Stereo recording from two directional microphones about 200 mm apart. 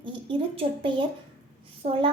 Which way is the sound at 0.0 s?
25° right (ahead or behind).